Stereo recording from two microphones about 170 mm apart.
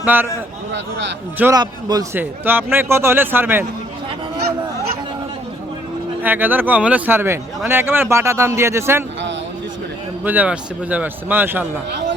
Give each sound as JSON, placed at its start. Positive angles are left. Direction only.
{"t": 0.0, "sound": "a man's voice", "side_deg": -10}
{"t": 0.7, "sound": "speech", "side_deg": -90}
{"t": 1.5, "sound": "a man's voice", "side_deg": -25}
{"t": 2.1, "sound": "speech", "side_deg": -10}
{"t": 6.2, "sound": "speech", "side_deg": -10}
{"t": 10.2, "sound": "speech", "side_deg": -10}